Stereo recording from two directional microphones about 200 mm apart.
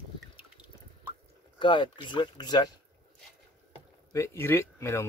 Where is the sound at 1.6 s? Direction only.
25° left (ahead or behind).